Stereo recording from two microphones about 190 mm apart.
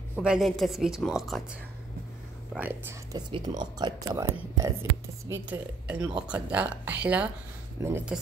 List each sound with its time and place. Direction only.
0.1 s speech: 5° right (ahead or behind)
2.5 s speech: 10° right (ahead or behind)